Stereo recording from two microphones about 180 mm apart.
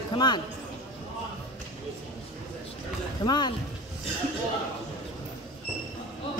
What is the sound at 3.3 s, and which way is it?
Speech, 25° left (ahead or behind).